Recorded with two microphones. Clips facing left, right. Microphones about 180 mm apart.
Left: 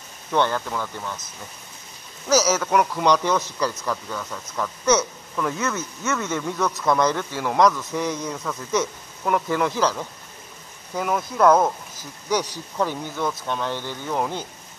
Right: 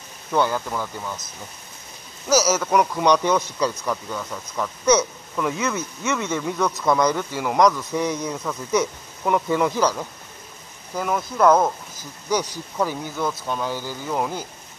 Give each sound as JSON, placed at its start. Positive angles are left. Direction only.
{"t": 0.3, "sound": "speech", "side_deg": -5}
{"t": 2.5, "sound": "speech", "side_deg": 0}
{"t": 3.0, "sound": "speech", "side_deg": -15}
{"t": 7.0, "sound": "speech", "side_deg": -15}
{"t": 11.0, "sound": "speech", "side_deg": 0}